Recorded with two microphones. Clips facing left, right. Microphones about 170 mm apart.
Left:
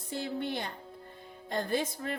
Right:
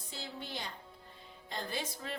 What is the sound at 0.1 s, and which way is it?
A woman's voice, 55° left (ahead or behind).